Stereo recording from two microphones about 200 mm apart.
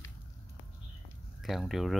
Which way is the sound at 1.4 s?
Centre (ahead or behind).